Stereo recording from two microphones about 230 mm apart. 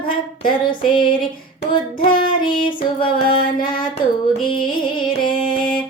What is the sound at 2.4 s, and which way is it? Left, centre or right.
Music, left.